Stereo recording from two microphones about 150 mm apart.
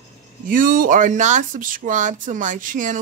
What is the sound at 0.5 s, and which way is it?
Speech, 65° right (ahead or behind).